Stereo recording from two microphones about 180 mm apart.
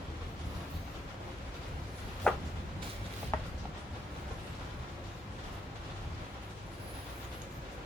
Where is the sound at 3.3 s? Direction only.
15° left (ahead or behind).